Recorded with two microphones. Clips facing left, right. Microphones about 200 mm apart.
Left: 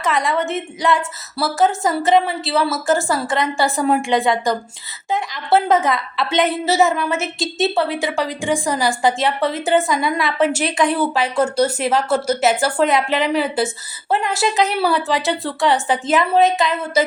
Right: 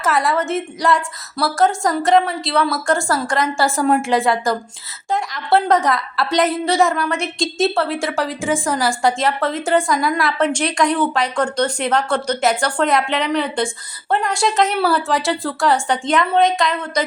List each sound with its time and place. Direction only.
0.0 s a woman's voice: 5° right (ahead or behind)